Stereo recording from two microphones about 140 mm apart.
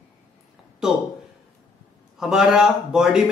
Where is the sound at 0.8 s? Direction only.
5° right (ahead or behind).